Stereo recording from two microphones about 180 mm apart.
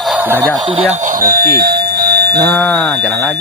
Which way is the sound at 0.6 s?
30° right (ahead or behind).